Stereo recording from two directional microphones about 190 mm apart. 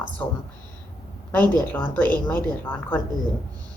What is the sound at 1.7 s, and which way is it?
A woman's voice, 10° left (ahead or behind).